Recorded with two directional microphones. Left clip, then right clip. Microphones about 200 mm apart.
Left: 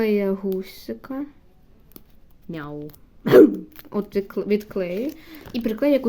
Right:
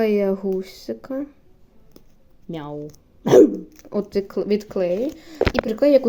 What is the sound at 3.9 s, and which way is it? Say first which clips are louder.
Speech: right 2 dB; 5° left (ahead or behind).